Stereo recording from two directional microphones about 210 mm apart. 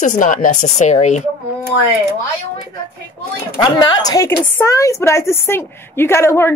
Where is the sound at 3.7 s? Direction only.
20° left (ahead or behind).